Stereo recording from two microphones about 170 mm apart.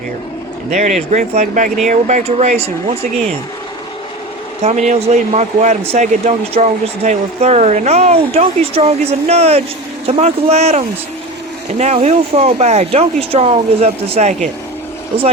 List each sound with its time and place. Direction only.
0.7 s speech: 40° right (ahead or behind)
4.6 s speech: 45° right (ahead or behind)